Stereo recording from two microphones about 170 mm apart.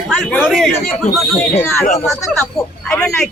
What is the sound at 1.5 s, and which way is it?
Speech, 15° left (ahead or behind).